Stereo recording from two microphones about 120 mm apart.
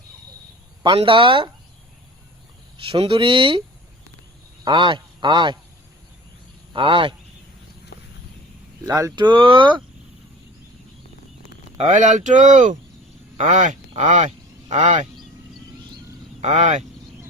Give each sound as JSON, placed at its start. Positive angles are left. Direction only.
{"t": 0.8, "sound": "speech", "side_deg": -45}
{"t": 2.8, "sound": "speech", "side_deg": -45}
{"t": 4.6, "sound": "speech", "side_deg": -40}
{"t": 6.7, "sound": "speech", "side_deg": -45}
{"t": 8.8, "sound": "speech", "side_deg": -25}
{"t": 9.1, "sound": "speech", "side_deg": -40}
{"t": 11.8, "sound": "speech", "side_deg": -90}
{"t": 16.4, "sound": "speech", "side_deg": -80}